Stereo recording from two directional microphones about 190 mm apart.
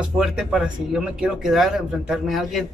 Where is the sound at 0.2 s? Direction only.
Centre (ahead or behind).